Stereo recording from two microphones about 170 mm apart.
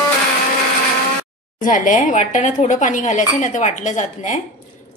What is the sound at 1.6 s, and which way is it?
A woman's voice, 50° left (ahead or behind).